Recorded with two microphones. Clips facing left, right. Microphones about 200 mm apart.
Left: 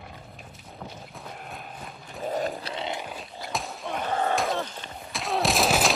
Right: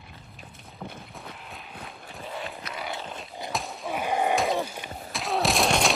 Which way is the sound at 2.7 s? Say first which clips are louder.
Left 3 dB; 20° left (ahead or behind).